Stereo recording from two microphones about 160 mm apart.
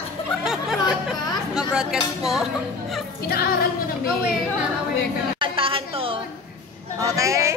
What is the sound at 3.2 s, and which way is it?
Music, 75° left (ahead or behind).